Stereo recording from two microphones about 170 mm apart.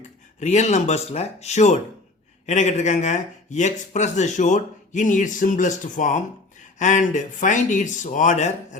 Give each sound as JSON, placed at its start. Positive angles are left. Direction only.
{"t": 0.3, "sound": "speech", "side_deg": 45}